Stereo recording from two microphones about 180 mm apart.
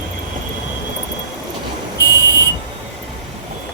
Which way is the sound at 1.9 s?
15° left (ahead or behind).